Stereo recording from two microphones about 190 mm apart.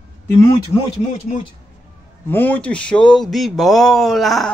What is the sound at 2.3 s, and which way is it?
Speech, 10° left (ahead or behind).